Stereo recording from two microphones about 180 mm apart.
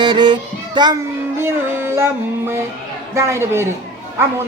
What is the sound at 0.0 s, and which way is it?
Music, 25° right (ahead or behind).